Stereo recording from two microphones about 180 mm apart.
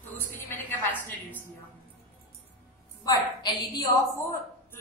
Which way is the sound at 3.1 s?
20° left (ahead or behind).